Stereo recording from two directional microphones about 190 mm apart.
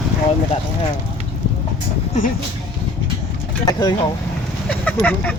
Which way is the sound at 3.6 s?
20° left (ahead or behind).